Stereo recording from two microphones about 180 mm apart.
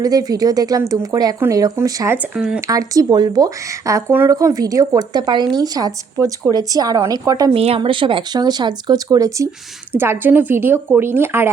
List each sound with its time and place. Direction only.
0.0 s speech: 20° right (ahead or behind)
2.1 s speech: 5° right (ahead or behind)
2.6 s speech: 20° right (ahead or behind)
7.5 s speech: 35° right (ahead or behind); by 11.5 s 15° right (ahead or behind)